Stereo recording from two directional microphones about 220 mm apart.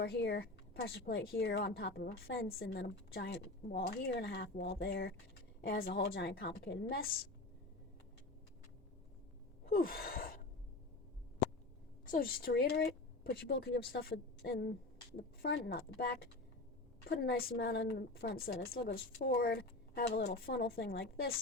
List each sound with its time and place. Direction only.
0.0 s a woman's voice: 50° left (ahead or behind)
9.6 s gasp: 45° left (ahead or behind)
12.1 s a woman's voice: 40° left (ahead or behind)